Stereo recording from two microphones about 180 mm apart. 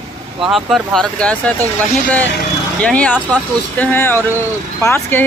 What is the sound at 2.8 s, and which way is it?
Speech, 5° left (ahead or behind).